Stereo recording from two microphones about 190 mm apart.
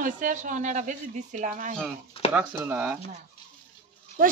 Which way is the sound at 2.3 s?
10° right (ahead or behind).